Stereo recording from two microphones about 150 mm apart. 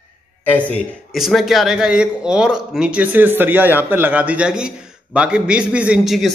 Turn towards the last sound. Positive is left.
turn(degrees=0)  # may be behind; listen again after turning